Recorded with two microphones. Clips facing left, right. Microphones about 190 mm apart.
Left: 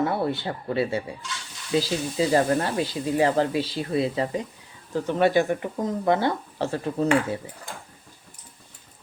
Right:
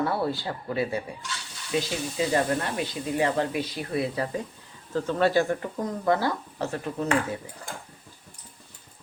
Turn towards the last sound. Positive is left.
turn(degrees=30)  # may be behind; listen again after turning